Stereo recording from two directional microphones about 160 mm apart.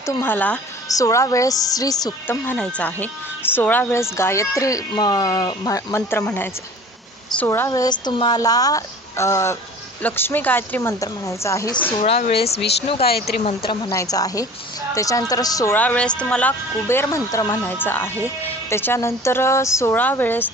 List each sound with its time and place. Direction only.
0.0 s speech: 15° left (ahead or behind)
0.9 s speech: 20° left (ahead or behind)
7.7 s speech: 25° left (ahead or behind)
12.0 s speech: 40° left (ahead or behind)
13.8 s speech: 20° left (ahead or behind)